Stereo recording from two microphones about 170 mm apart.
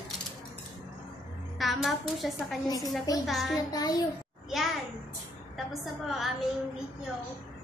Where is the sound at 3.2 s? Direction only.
Centre (ahead or behind).